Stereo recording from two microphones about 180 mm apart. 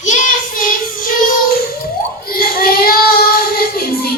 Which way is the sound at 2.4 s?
55° left (ahead or behind).